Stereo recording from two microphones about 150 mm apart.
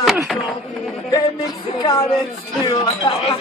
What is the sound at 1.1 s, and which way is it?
A man's voice, 25° left (ahead or behind).